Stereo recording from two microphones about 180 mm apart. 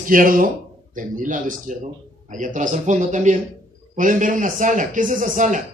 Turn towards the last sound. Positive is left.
turn(degrees=-45)  # may be behind; listen again after turning